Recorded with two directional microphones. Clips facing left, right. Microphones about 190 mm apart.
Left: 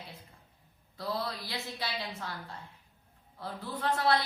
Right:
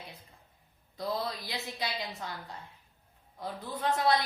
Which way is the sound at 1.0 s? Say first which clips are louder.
Right 2 dB; 20° right (ahead or behind).